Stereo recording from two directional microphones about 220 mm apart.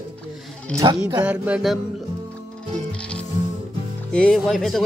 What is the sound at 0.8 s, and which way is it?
Speech, 15° right (ahead or behind).